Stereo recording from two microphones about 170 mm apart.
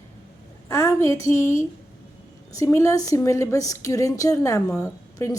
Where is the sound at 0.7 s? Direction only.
15° left (ahead or behind).